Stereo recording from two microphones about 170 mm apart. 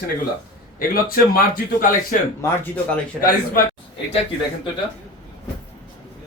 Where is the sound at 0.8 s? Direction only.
60° left (ahead or behind).